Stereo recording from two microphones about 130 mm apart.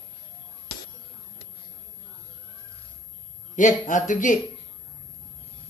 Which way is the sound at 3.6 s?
80° left.